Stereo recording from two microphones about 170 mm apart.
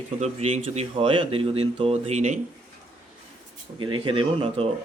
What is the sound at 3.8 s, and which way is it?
Speech, 30° right (ahead or behind).